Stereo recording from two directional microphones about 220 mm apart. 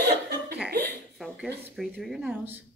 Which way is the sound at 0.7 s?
50° right (ahead or behind).